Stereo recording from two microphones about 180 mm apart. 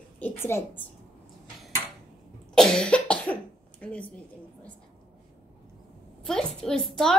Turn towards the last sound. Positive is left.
turn(degrees=0)  # may be behind; listen again after turning